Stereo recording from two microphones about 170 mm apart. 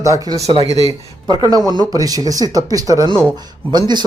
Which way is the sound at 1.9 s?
20° right (ahead or behind).